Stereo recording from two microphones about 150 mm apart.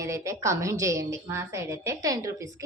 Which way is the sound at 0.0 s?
20° right (ahead or behind).